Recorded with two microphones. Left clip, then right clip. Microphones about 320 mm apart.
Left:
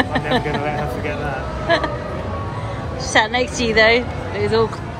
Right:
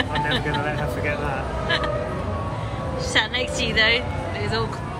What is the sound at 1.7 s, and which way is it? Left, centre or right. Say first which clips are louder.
Speech: left 6 dB; centre.